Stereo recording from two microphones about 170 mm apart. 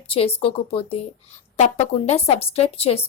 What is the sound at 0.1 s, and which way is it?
A woman's voice, 35° left (ahead or behind).